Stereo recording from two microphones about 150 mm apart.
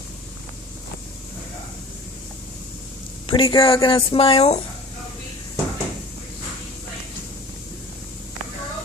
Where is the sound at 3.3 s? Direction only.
35° left (ahead or behind).